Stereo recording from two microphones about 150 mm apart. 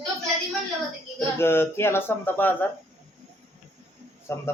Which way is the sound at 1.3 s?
15° left (ahead or behind).